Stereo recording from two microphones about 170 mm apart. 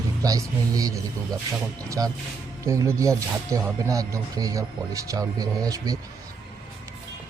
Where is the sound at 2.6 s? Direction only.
20° right (ahead or behind).